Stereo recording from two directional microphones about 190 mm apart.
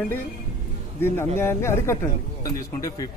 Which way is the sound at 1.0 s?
10° left (ahead or behind).